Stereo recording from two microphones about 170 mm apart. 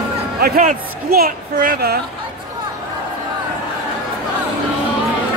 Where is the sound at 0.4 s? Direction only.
55° right (ahead or behind).